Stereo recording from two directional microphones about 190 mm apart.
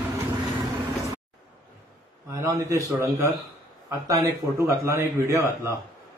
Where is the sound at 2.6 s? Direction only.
15° right (ahead or behind).